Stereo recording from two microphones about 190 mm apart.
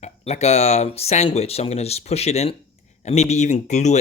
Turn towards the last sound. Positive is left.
turn(degrees=35)  # may be behind; listen again after turning